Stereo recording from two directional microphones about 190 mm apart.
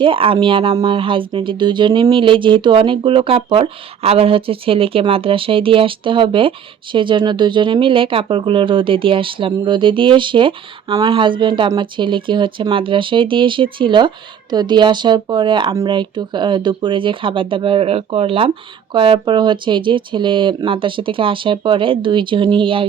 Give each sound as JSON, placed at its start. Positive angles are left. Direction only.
{"t": 0.0, "sound": "speech", "side_deg": -30}